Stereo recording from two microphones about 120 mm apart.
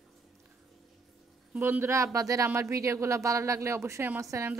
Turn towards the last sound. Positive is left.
turn(degrees=-20)  # may be behind; listen again after turning